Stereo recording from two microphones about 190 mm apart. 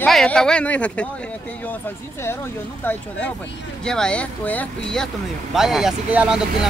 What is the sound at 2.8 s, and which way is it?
Speech, 10° left (ahead or behind).